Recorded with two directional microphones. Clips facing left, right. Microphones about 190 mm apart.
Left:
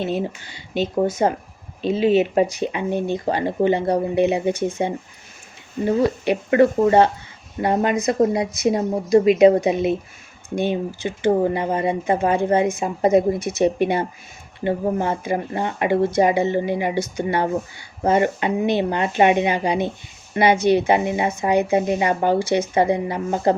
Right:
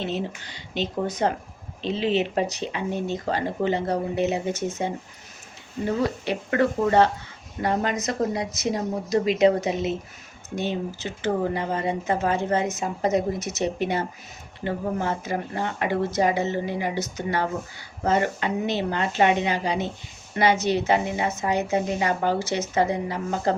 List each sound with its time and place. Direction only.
0.1 s speech: 10° left (ahead or behind)